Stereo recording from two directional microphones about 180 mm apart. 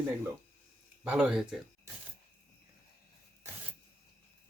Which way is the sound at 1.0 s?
5° right (ahead or behind).